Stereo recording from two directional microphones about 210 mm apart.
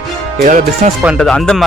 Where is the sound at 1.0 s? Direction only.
Centre (ahead or behind).